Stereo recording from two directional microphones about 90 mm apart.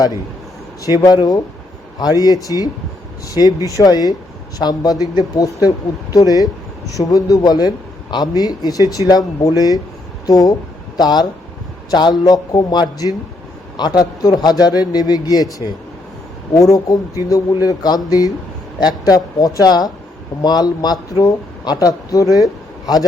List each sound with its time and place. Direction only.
0.9 s speech: 45° left (ahead or behind)